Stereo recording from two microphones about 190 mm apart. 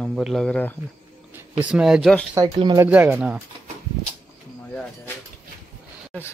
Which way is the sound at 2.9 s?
10° right (ahead or behind).